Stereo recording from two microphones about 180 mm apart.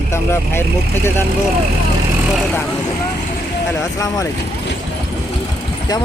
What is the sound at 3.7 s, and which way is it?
Speech, 20° left (ahead or behind).